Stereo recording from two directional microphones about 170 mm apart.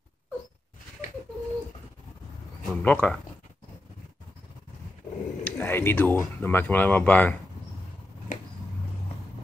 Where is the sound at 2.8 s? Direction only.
10° left (ahead or behind).